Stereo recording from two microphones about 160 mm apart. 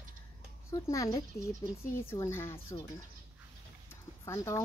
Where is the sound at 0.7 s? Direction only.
20° left (ahead or behind).